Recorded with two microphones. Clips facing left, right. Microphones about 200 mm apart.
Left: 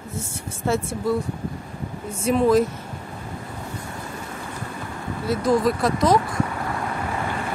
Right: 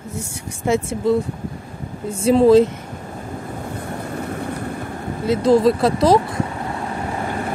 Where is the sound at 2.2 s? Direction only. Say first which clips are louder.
Right 6 dB; 30° right (ahead or behind).